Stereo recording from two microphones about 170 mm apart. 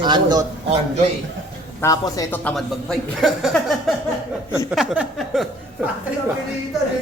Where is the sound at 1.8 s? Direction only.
20° left (ahead or behind).